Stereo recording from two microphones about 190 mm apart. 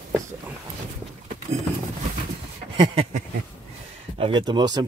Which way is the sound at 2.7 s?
25° right (ahead or behind).